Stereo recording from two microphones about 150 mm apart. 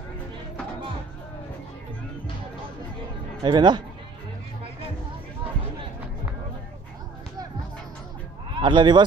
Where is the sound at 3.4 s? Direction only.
30° right (ahead or behind).